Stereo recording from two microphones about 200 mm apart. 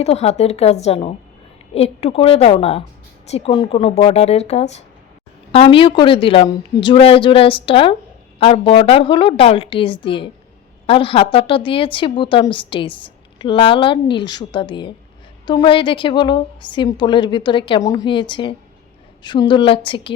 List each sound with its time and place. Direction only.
0.0 s a woman's voice: 30° left (ahead or behind)